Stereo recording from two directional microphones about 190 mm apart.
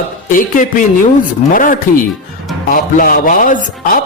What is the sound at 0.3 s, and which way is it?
Music, 45° left (ahead or behind).